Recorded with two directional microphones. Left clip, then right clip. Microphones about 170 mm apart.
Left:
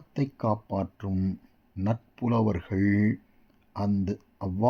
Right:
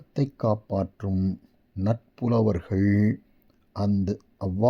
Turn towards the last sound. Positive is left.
turn(degrees=-25)  # may be behind; listen again after turning